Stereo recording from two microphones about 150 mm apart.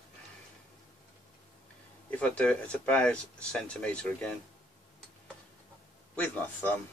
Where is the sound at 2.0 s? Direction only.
5° left (ahead or behind).